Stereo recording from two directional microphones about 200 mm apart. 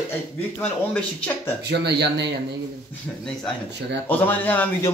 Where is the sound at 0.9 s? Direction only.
5° left (ahead or behind).